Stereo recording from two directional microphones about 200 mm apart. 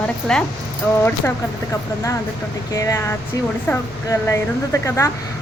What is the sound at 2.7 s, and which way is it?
Speech, 15° left (ahead or behind).